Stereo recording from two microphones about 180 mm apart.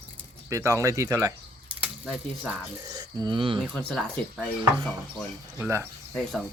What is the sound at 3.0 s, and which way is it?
Speech, 25° right (ahead or behind).